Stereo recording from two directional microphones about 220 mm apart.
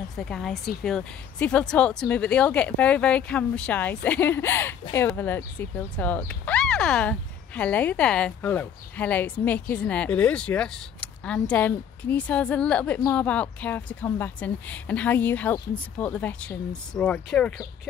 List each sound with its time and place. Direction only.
0.1 s a woman's voice: centre (ahead or behind)